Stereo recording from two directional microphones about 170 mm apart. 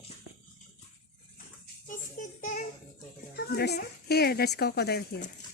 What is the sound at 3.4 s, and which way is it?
A woman's voice, 70° left (ahead or behind).